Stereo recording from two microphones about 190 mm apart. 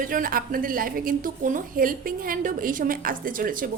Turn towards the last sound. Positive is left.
turn(degrees=-45)  # may be behind; listen again after turning